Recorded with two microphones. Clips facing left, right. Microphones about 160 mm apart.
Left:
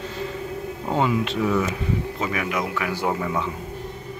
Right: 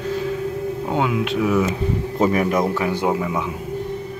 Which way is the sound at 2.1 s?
40° right (ahead or behind).